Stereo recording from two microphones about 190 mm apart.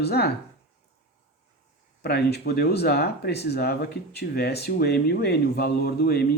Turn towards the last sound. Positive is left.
turn(degrees=55)  # may be behind; listen again after turning